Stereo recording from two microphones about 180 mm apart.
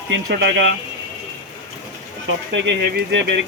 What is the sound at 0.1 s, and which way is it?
Speech, 80° right.